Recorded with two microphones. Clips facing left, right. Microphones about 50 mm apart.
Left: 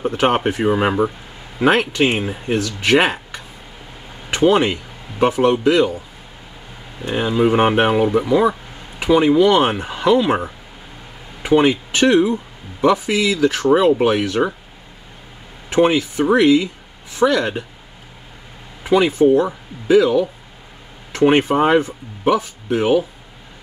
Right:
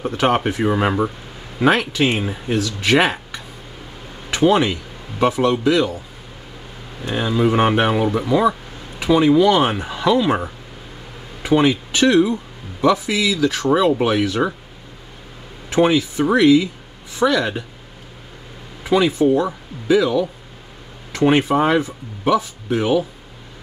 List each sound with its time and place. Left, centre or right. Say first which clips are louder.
0.0 s speech: left 1 dB; left
0.7 s speech: left 3 dB; centre
4.3 s speech: left 1 dB; left
7.1 s speech: left 2 dB; centre
11.4 s speech: left 2 dB; left
15.7 s speech: left 1 dB; left
17.2 s speech: left 1 dB; centre
18.9 s speech: left 2 dB; left